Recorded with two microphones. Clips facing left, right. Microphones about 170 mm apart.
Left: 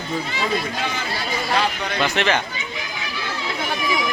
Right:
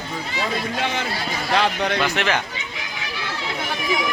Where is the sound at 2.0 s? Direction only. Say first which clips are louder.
Left 5 dB; 5° right (ahead or behind).